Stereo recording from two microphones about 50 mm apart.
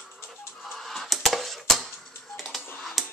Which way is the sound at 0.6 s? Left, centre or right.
Centre.